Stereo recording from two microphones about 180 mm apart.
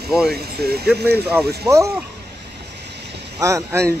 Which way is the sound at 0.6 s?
65° right (ahead or behind).